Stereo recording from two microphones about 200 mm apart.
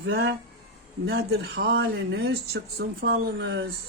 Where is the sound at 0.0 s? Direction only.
55° right (ahead or behind).